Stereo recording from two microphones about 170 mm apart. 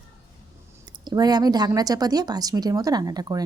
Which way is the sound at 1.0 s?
25° right (ahead or behind).